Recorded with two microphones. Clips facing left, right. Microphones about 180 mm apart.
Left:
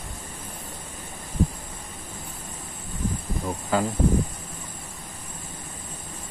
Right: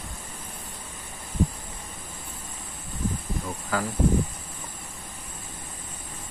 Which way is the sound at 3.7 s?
25° left (ahead or behind).